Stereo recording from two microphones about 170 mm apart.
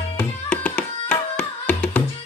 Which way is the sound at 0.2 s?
5° left (ahead or behind).